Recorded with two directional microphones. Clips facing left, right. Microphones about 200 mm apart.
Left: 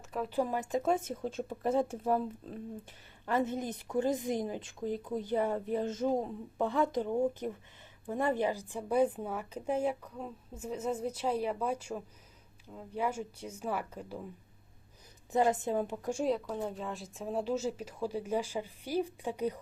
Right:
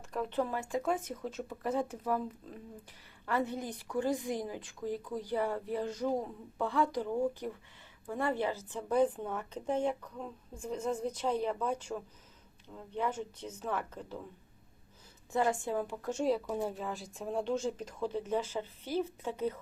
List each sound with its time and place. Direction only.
0.1 s a woman's voice: 5° left (ahead or behind); by 2.2 s 30° left (ahead or behind)
3.2 s a woman's voice: 20° left (ahead or behind)
15.3 s a woman's voice: 20° left (ahead or behind)
16.5 s a woman's voice: 10° right (ahead or behind); by 19.5 s 15° left (ahead or behind)